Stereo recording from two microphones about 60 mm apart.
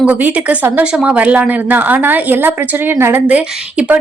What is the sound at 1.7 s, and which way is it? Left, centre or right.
Speech, right.